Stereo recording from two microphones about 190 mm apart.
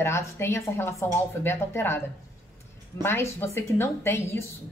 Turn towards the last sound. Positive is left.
turn(degrees=15)  # may be behind; listen again after turning